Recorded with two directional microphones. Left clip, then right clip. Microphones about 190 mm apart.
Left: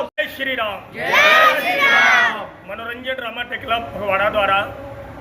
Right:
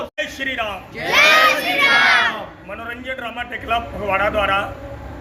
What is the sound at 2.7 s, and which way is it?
A man's voice, 15° left (ahead or behind).